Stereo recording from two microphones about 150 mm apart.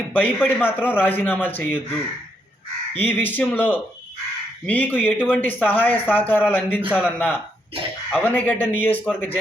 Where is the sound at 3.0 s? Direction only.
15° left (ahead or behind).